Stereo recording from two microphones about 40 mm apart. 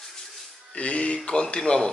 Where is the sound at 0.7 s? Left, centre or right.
Left.